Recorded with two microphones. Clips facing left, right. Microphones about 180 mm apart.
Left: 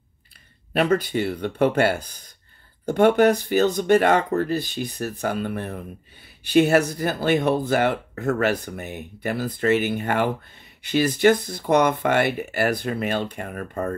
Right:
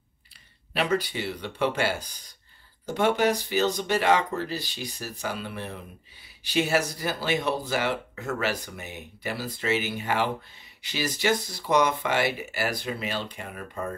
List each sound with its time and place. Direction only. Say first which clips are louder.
0.7 s speech: left 6 dB; 50° left (ahead or behind)